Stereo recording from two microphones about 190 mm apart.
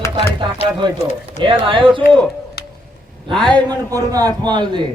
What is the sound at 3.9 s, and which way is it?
Speech, 20° right (ahead or behind).